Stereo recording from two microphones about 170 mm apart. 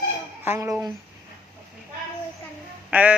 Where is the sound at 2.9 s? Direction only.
10° right (ahead or behind).